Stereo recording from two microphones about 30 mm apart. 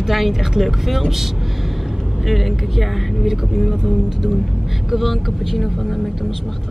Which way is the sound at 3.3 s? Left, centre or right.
Centre.